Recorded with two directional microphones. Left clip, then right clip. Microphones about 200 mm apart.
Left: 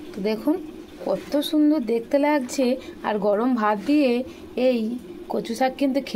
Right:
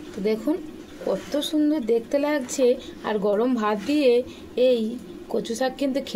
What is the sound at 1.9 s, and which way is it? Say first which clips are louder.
Speech: left 1 dB; 20° left (ahead or behind).